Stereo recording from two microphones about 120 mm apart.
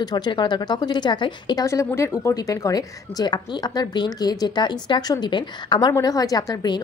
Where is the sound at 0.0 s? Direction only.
35° left (ahead or behind).